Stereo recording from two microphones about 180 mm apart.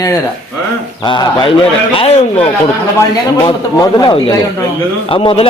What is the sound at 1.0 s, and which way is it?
A man's voice, 25° left (ahead or behind).